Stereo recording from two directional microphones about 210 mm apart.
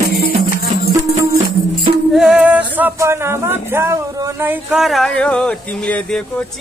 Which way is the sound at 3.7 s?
10° right (ahead or behind).